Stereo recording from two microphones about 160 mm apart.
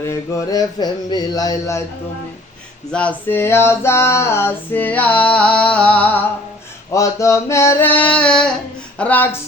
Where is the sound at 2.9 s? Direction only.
10° left (ahead or behind).